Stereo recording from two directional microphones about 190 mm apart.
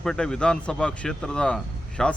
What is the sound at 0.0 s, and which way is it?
Speech, 5° left (ahead or behind).